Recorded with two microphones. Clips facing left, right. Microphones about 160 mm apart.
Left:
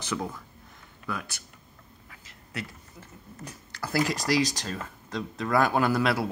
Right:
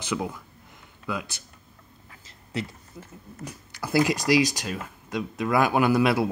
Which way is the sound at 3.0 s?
15° right (ahead or behind).